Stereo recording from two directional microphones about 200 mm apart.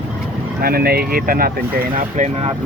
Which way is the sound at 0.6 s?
50° right (ahead or behind).